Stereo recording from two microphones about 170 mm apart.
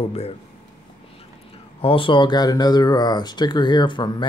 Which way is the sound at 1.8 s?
30° left (ahead or behind).